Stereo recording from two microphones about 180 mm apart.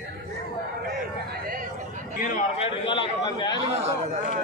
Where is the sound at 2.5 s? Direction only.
30° left (ahead or behind).